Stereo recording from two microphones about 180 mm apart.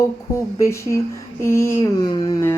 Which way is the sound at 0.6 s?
15° left (ahead or behind).